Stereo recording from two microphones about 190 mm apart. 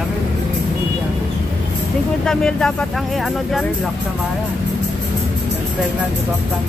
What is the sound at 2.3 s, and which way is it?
Speech, 5° left (ahead or behind).